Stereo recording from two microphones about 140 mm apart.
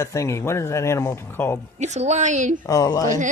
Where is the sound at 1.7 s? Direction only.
55° right (ahead or behind).